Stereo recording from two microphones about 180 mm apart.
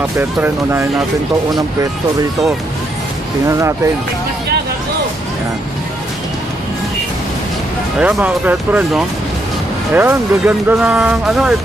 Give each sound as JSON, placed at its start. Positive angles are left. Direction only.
{"t": 0.2, "sound": "speech", "side_deg": -10}
{"t": 3.4, "sound": "speech", "side_deg": -15}
{"t": 8.0, "sound": "speech", "side_deg": -5}